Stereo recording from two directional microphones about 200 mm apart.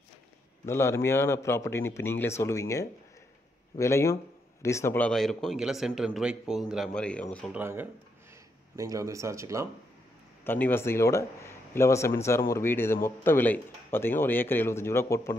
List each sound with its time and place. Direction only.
0.7 s a man's voice: 15° left (ahead or behind)
7.5 s speech: 10° right (ahead or behind)
10.4 s speech: 10° left (ahead or behind)